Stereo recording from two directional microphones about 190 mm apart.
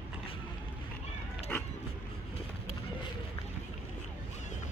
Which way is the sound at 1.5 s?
5° left (ahead or behind).